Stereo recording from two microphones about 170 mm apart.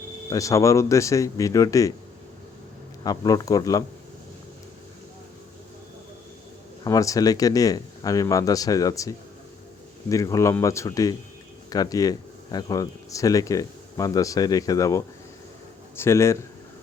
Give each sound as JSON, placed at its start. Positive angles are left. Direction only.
{"t": 0.3, "sound": "speech", "side_deg": 20}
{"t": 3.0, "sound": "speech", "side_deg": 20}
{"t": 6.8, "sound": "speech", "side_deg": 20}